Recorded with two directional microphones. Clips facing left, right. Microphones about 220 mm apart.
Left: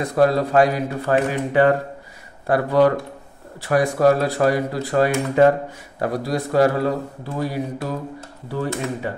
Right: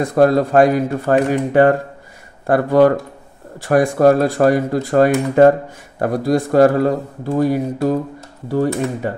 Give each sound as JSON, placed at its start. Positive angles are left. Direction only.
{"t": 0.1, "sound": "speech", "side_deg": -50}